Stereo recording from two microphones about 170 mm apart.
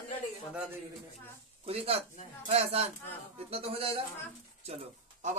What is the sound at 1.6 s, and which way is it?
Speech, 35° right (ahead or behind).